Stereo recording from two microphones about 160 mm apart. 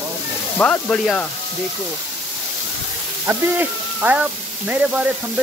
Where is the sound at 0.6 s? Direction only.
10° left (ahead or behind).